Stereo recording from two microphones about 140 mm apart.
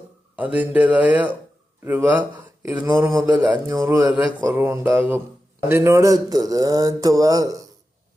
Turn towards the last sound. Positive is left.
turn(degrees=-25)  # may be behind; listen again after turning